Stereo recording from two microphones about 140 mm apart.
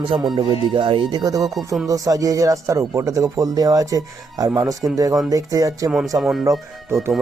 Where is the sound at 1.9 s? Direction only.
25° right (ahead or behind).